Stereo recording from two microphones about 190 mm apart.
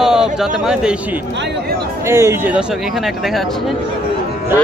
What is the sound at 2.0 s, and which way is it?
Speech, 15° right (ahead or behind).